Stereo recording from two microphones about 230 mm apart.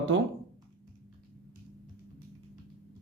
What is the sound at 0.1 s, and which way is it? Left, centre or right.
Speech, right.